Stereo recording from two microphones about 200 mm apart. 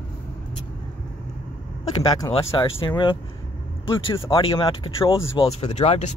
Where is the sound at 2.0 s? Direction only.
25° left (ahead or behind).